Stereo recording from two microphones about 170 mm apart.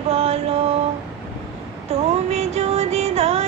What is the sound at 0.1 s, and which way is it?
Mantra, 40° right (ahead or behind).